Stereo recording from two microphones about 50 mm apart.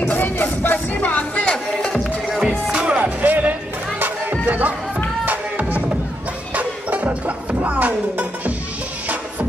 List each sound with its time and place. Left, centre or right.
0.0 s music: left
2.6 s music: centre
3.0 s music: right